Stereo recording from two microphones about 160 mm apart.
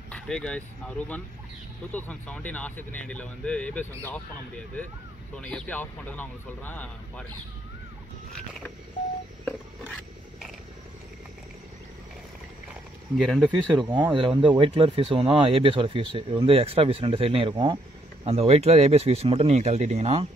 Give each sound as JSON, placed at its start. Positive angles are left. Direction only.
{"t": 0.1, "sound": "speech", "side_deg": 5}
{"t": 5.3, "sound": "speech", "side_deg": 5}
{"t": 13.2, "sound": "speech", "side_deg": 0}
{"t": 13.7, "sound": "speech", "side_deg": -30}
{"t": 18.2, "sound": "speech", "side_deg": -40}